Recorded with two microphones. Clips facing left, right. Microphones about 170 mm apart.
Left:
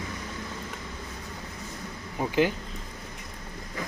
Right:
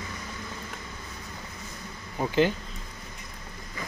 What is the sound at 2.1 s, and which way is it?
Bee, 10° left (ahead or behind).